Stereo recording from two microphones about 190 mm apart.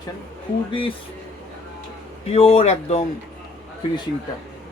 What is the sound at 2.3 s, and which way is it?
Speech, 35° left (ahead or behind).